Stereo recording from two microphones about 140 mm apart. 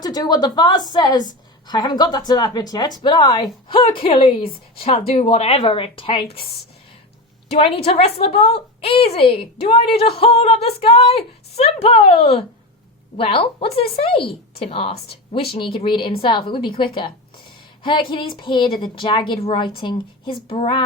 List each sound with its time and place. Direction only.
0.0 s a woman's voice: 30° left (ahead or behind)